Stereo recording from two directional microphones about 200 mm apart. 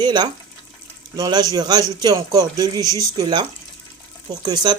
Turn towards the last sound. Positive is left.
turn(degrees=-20)  # may be behind; listen again after turning